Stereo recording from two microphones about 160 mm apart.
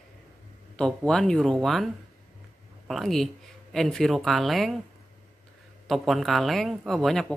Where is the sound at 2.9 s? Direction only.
Centre (ahead or behind).